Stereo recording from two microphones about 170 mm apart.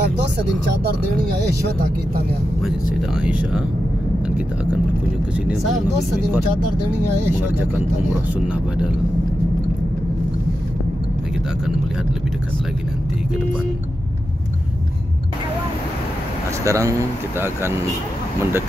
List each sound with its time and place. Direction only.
3.3 s speech: 5° right (ahead or behind)
16.6 s speech: 20° right (ahead or behind)